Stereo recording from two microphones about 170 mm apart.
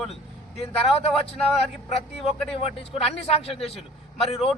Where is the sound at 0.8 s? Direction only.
35° left (ahead or behind).